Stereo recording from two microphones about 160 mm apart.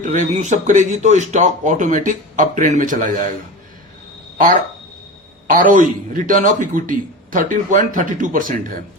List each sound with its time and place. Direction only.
0.0 s speech: 50° right (ahead or behind)
4.4 s a man's voice: 55° right (ahead or behind)